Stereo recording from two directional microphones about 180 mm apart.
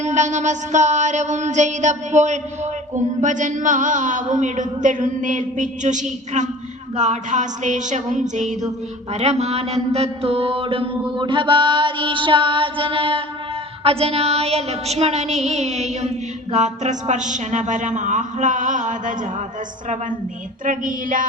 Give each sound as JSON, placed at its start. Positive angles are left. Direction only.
{"t": 0.0, "sound": "child singing", "side_deg": -40}
{"t": 2.9, "sound": "mantra", "side_deg": -45}
{"t": 13.8, "sound": "child singing", "side_deg": -35}
{"t": 20.7, "sound": "mantra", "side_deg": -50}